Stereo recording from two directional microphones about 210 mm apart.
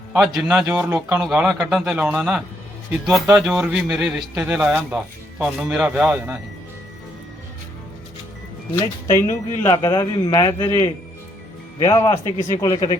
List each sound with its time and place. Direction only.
0.1 s a man's voice: centre (ahead or behind)
8.7 s a man's voice: 15° left (ahead or behind)
11.8 s a man's voice: 15° left (ahead or behind)